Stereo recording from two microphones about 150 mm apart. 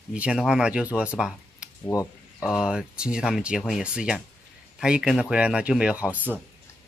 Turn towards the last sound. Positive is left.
turn(degrees=-10)  # may be behind; listen again after turning